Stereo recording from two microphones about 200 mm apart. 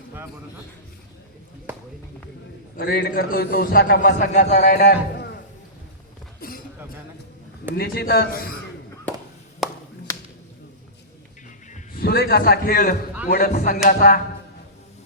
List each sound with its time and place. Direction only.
2.7 s a man's voice: 50° left (ahead or behind)
6.4 s a sound: 50° left (ahead or behind)
7.8 s a man's voice: 50° left (ahead or behind)
10.1 s whip: 15° left (ahead or behind)
11.7 s a man's voice: 50° left (ahead or behind)
13.5 s a sound: 40° left (ahead or behind)
13.8 s a man's voice: 45° left (ahead or behind)